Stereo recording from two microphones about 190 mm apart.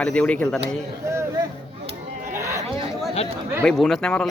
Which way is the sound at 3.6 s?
5° left (ahead or behind).